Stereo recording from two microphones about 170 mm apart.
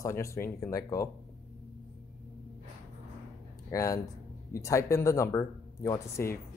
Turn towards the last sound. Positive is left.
turn(degrees=15)  # may be behind; listen again after turning